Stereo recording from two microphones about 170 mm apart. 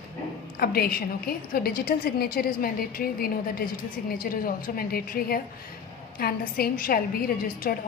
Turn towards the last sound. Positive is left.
turn(degrees=60)  # may be behind; listen again after turning